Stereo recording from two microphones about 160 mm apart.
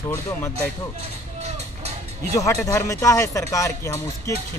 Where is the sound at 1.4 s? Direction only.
45° right (ahead or behind).